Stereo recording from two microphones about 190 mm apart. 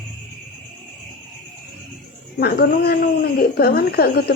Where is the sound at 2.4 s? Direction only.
55° left (ahead or behind).